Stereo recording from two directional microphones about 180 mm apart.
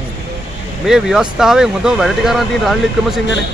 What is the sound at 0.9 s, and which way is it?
Speech, 5° right (ahead or behind).